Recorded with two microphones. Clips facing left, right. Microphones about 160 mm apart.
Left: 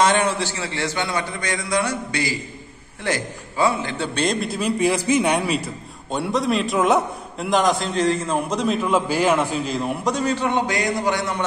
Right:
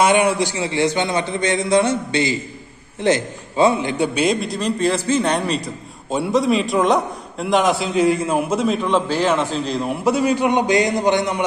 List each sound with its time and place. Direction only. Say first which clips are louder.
0.0 s a man's voice: right 3 dB; 10° right (ahead or behind)
4.1 s a man's voice: right 3 dB; 5° right (ahead or behind)
6.0 s a man's voice: right 4 dB; centre (ahead or behind)
9.8 s a man's voice: right 6 dB; centre (ahead or behind); by 11.4 s 20° right (ahead or behind)